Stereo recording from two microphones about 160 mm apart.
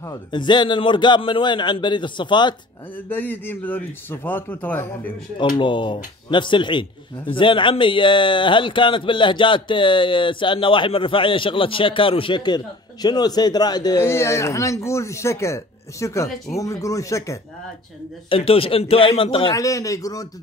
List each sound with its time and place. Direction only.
0.3 s a man's voice: 30° left (ahead or behind)
3.1 s a man's voice: 10° left (ahead or behind)
5.6 s a man's voice: 30° left (ahead or behind)
18.3 s a man's voice: 35° left (ahead or behind)
19.5 s a man's voice: 20° left (ahead or behind)